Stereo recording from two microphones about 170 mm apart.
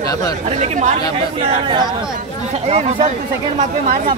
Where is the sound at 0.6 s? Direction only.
45° right (ahead or behind).